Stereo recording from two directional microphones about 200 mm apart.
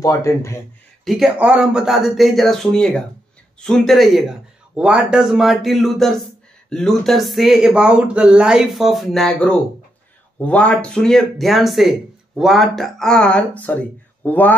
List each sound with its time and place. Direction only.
0.0 s speech: 15° left (ahead or behind)
1.0 s speech: centre (ahead or behind)